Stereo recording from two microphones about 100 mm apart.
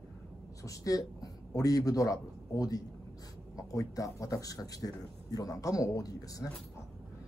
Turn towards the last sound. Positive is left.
turn(degrees=35)  # may be behind; listen again after turning